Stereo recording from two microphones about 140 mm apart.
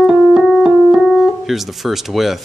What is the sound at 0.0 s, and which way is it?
Keyboard, 5° right (ahead or behind).